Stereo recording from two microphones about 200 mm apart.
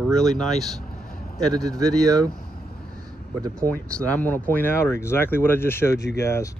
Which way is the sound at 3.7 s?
10° left (ahead or behind).